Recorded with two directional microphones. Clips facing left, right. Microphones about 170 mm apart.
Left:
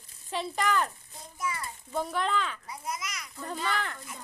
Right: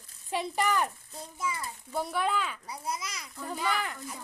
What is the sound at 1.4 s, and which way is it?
Speech, 25° right (ahead or behind).